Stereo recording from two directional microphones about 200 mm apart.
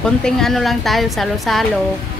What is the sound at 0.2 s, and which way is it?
Speech, centre (ahead or behind).